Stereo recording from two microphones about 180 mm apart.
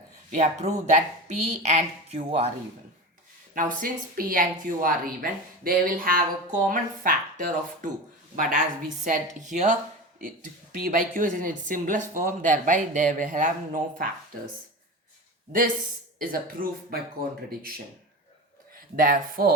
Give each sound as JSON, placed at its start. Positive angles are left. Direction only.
{"t": 0.3, "sound": "speech", "side_deg": -40}
{"t": 3.5, "sound": "a woman's voice", "side_deg": -50}
{"t": 16.1, "sound": "a woman's voice", "side_deg": -55}
{"t": 18.9, "sound": "a woman's voice", "side_deg": -55}